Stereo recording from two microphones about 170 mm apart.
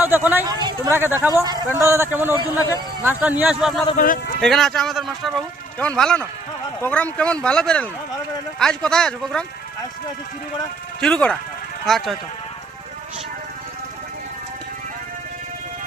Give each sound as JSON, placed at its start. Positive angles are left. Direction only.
{"t": 0.0, "sound": "speech", "side_deg": -10}
{"t": 1.4, "sound": "a man's voice", "side_deg": -25}
{"t": 2.6, "sound": "a man's voice", "side_deg": 20}
{"t": 3.0, "sound": "a man's voice", "side_deg": -10}
{"t": 3.9, "sound": "speech", "side_deg": 55}
{"t": 4.4, "sound": "speech", "side_deg": 0}
{"t": 11.0, "sound": "speech", "side_deg": 5}